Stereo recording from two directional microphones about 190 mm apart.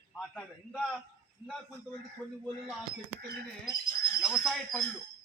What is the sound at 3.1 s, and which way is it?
Speech, 55° right (ahead or behind).